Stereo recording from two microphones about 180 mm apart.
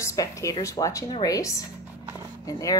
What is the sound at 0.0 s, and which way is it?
Speech, 15° left (ahead or behind).